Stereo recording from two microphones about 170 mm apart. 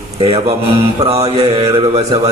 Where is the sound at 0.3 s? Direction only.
35° right (ahead or behind).